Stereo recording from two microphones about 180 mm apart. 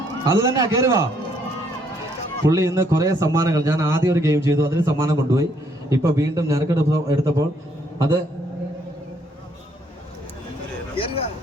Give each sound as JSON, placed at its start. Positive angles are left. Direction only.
{"t": 0.3, "sound": "a man's voice", "side_deg": -20}
{"t": 2.5, "sound": "a man's voice", "side_deg": -15}
{"t": 10.9, "sound": "a sound", "side_deg": 30}